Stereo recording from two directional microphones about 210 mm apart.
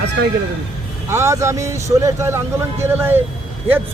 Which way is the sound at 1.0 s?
10° right (ahead or behind).